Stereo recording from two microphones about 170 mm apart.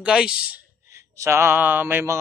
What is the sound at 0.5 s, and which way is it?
Speech, 15° right (ahead or behind).